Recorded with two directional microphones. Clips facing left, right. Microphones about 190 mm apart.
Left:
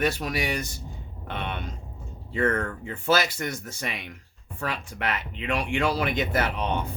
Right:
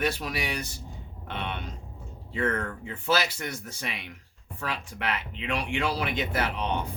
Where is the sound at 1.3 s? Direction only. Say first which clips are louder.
Left 2 dB; 50° left (ahead or behind).